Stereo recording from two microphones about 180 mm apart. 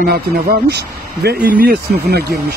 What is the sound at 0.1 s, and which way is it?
Speech, 65° right (ahead or behind).